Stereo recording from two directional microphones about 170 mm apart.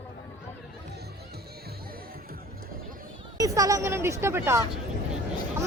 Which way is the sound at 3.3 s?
20° right (ahead or behind).